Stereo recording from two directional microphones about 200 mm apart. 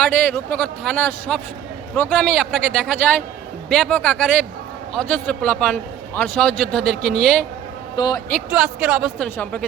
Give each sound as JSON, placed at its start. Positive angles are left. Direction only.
{"t": 0.0, "sound": "a man's voice", "side_deg": 5}
{"t": 7.9, "sound": "a man's voice", "side_deg": 20}
{"t": 8.4, "sound": "a man's voice", "side_deg": -5}